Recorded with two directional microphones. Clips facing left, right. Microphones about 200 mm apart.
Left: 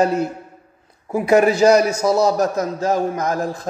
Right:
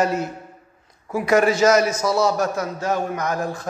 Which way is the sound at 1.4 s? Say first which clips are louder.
Left 3 dB; 35° left (ahead or behind).